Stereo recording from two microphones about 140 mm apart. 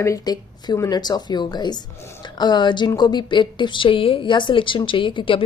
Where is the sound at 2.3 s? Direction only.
30° left (ahead or behind).